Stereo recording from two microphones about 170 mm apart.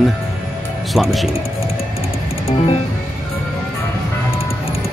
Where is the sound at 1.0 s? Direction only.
Centre (ahead or behind).